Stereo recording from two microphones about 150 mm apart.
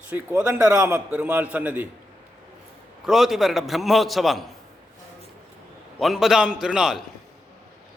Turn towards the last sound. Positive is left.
turn(degrees=-5)  # may be behind; listen again after turning